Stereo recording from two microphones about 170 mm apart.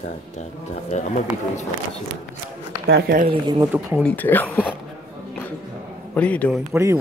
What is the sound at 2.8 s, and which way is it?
Speech, 65° right (ahead or behind).